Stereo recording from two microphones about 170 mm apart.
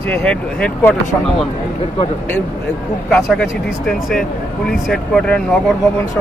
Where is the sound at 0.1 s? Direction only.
5° left (ahead or behind).